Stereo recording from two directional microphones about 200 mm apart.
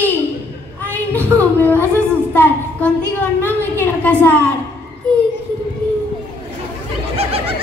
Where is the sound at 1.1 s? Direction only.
10° left (ahead or behind).